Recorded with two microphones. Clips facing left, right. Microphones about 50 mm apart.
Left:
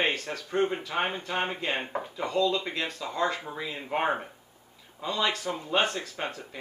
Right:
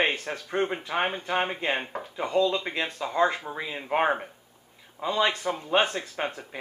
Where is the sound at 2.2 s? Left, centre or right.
Centre.